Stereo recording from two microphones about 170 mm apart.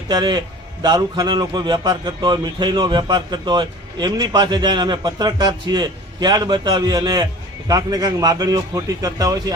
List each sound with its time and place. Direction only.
0.1 s a man's voice: 25° right (ahead or behind)